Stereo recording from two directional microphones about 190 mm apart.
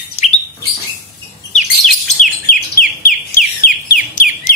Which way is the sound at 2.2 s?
45° left (ahead or behind).